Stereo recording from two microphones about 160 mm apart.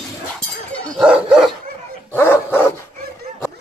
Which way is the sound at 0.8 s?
Centre (ahead or behind).